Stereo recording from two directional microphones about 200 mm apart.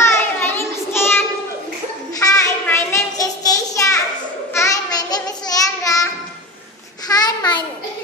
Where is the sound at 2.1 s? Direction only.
15° left (ahead or behind).